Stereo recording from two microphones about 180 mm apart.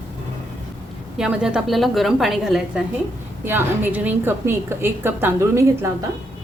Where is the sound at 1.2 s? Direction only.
5° right (ahead or behind).